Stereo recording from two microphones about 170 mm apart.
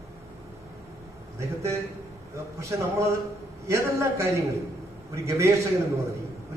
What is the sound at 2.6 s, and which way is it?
A man's voice, 15° right (ahead or behind).